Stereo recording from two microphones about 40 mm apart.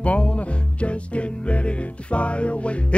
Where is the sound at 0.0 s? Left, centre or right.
Left.